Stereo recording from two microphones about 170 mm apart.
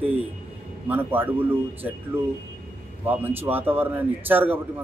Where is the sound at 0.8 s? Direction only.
10° right (ahead or behind).